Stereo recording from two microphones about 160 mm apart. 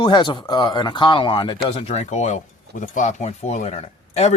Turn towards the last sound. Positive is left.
turn(degrees=40)  # may be behind; listen again after turning